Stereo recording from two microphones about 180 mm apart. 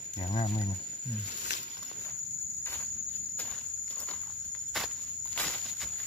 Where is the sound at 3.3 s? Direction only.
10° left (ahead or behind).